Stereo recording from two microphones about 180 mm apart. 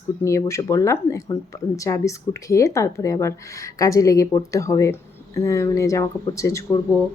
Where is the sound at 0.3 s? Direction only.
15° left (ahead or behind).